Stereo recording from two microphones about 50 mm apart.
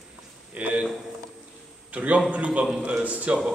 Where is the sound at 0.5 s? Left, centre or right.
Right.